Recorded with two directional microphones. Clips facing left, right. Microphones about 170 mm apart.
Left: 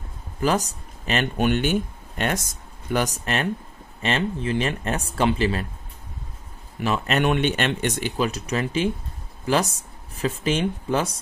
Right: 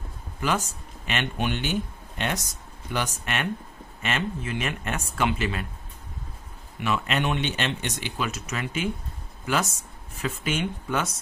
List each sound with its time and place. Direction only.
0.4 s speech: 40° left (ahead or behind)
6.8 s speech: 35° left (ahead or behind)
7.2 s speech: 55° left (ahead or behind)
8.2 s speech: 35° left (ahead or behind)
10.1 s speech: 35° left (ahead or behind)